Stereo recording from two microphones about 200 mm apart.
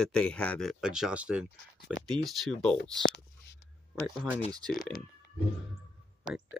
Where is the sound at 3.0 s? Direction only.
60° left (ahead or behind).